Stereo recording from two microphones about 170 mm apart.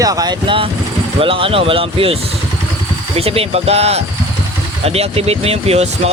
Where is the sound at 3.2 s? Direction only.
35° right (ahead or behind).